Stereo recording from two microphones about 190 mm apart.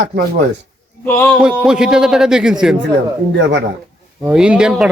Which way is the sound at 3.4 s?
65° right (ahead or behind).